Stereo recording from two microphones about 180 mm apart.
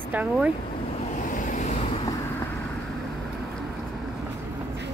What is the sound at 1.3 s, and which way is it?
Waves, 45° left (ahead or behind).